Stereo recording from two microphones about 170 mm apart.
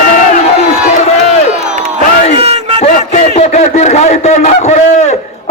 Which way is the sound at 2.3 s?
35° right (ahead or behind).